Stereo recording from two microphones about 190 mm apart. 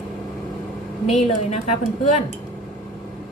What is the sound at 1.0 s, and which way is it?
Speech, 35° left (ahead or behind).